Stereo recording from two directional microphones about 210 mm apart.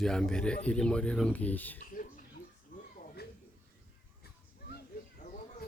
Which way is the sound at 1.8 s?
40° left (ahead or behind).